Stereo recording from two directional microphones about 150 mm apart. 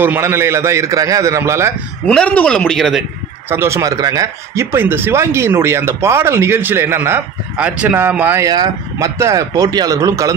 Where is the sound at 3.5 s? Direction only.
15° right (ahead or behind).